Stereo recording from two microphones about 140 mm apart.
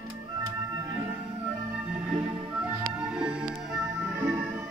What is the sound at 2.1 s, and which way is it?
Music, 5° right (ahead or behind).